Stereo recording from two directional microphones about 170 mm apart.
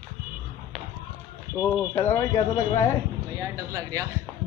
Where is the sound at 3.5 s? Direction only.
20° right (ahead or behind).